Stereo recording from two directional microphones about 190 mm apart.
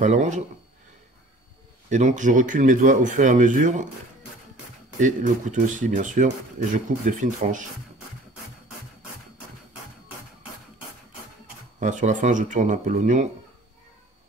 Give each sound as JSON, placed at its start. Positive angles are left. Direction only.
{"t": 0.0, "sound": "speech", "side_deg": -40}
{"t": 1.9, "sound": "speech", "side_deg": -40}
{"t": 5.0, "sound": "speech", "side_deg": -40}
{"t": 11.8, "sound": "speech", "side_deg": -40}